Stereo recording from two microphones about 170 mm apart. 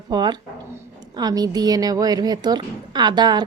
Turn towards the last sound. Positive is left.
turn(degrees=-25)  # may be behind; listen again after turning